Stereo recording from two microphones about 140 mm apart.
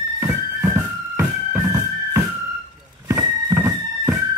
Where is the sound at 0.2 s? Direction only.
15° right (ahead or behind).